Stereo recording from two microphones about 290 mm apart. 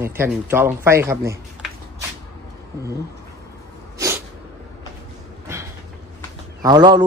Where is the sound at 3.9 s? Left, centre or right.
Centre.